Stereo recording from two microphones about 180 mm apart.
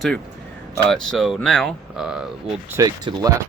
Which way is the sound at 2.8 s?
20° right (ahead or behind).